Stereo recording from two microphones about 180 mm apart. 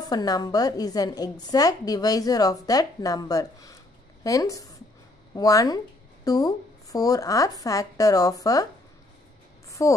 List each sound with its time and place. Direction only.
0.0 s a woman's voice: 20° left (ahead or behind)
9.7 s a woman's voice: 15° left (ahead or behind)